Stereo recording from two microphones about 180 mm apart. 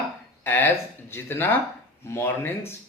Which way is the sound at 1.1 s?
10° left (ahead or behind).